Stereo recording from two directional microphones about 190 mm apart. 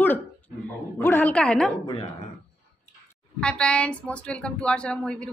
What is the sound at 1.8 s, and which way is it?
Speech, 30° left (ahead or behind).